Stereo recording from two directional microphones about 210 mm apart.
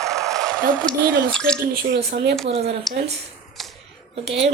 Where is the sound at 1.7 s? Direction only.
50° right (ahead or behind).